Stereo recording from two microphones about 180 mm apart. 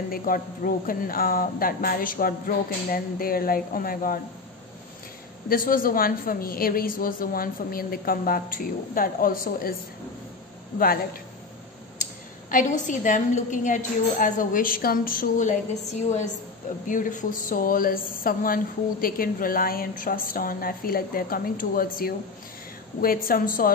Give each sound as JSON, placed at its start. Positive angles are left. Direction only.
{"t": 0.1, "sound": "speech", "side_deg": 50}
{"t": 5.5, "sound": "speech", "side_deg": 50}
{"t": 12.4, "sound": "speech", "side_deg": 45}